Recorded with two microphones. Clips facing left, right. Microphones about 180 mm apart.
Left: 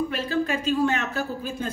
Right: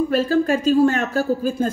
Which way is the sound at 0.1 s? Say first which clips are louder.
Right 8 dB; 45° right (ahead or behind).